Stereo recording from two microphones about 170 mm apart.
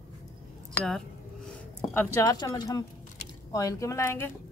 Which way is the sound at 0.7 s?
5° left (ahead or behind).